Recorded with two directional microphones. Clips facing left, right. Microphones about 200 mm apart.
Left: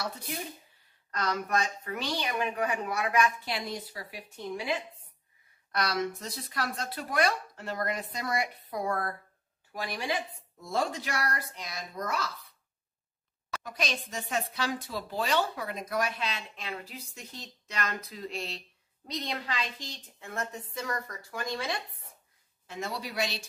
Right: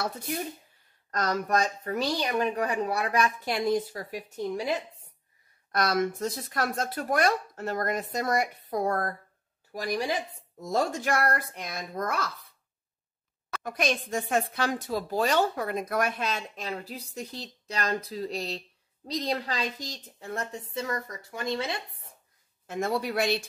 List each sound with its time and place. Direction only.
1.1 s a woman's voice: 40° right (ahead or behind)
3.4 s a woman's voice: 50° right (ahead or behind)
13.5 s a woman's voice: 55° right (ahead or behind); by 21.7 s 25° right (ahead or behind)
22.7 s a woman's voice: 50° right (ahead or behind)